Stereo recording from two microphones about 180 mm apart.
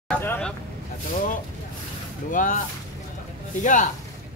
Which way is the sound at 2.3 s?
45° left (ahead or behind).